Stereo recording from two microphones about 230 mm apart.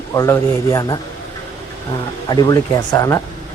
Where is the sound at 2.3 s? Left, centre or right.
Centre.